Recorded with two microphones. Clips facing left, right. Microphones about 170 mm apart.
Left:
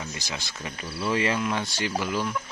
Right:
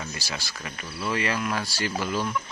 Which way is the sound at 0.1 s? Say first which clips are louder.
Even; 20° left (ahead or behind).